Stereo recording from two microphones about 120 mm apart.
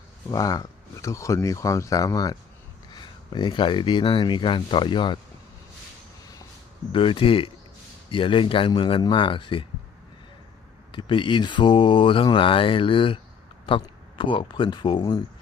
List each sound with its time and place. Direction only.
0.3 s speech: 30° left (ahead or behind)
6.9 s speech: 50° left (ahead or behind)
10.9 s speech: 45° left (ahead or behind)